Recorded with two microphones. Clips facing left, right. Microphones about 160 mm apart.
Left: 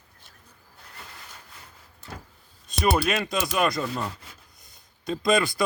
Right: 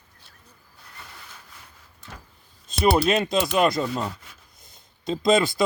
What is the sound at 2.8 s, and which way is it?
Speech, 25° right (ahead or behind).